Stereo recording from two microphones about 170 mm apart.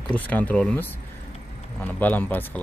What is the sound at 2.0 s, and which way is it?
Speech, 10° left (ahead or behind).